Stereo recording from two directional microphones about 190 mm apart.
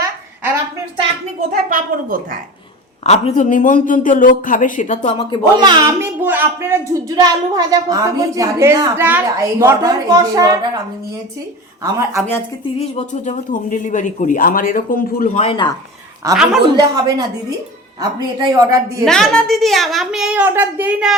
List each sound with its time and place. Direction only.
1.4 s a woman's voice: 50° right (ahead or behind)
3.0 s speech: 35° left (ahead or behind)
5.5 s speech: 20° right (ahead or behind)
11.8 s speech: 15° right (ahead or behind)
12.8 s speech: 35° left (ahead or behind)
15.4 s speech: 25° left (ahead or behind)
16.3 s a woman's voice: 5° right (ahead or behind)
16.7 s a woman's voice: 20° right (ahead or behind)
18.3 s speech: 20° right (ahead or behind)
19.0 s a woman's voice: 5° left (ahead or behind)